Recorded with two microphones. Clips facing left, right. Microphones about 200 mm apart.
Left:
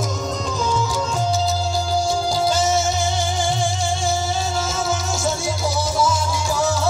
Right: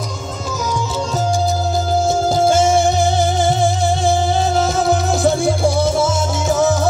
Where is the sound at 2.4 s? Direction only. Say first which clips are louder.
Right 7 dB; 50° right (ahead or behind).